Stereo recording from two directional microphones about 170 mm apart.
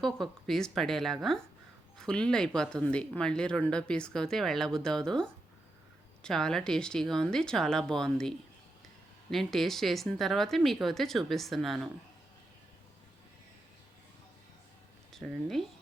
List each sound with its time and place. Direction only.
0.0 s speech: centre (ahead or behind)
9.3 s speech: centre (ahead or behind)
15.1 s speech: centre (ahead or behind)